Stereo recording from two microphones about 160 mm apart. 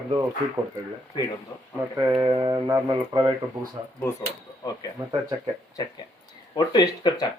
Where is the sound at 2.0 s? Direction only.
20° right (ahead or behind).